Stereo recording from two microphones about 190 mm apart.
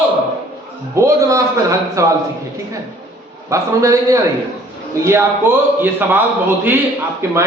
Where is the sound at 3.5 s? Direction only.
15° right (ahead or behind).